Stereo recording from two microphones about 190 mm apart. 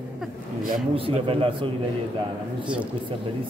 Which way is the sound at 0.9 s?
30° right (ahead or behind).